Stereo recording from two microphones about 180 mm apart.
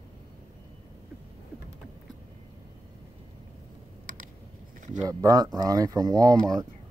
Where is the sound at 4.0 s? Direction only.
50° right (ahead or behind).